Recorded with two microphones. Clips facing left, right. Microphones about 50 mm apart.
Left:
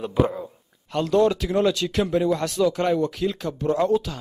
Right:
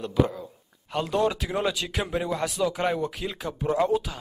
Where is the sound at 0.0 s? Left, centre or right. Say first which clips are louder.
Left 2 dB; centre.